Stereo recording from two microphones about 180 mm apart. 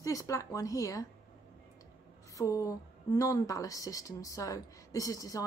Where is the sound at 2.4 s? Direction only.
20° left (ahead or behind).